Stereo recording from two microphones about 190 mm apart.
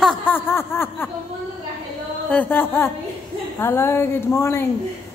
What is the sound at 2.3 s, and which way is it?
Speech, 10° left (ahead or behind).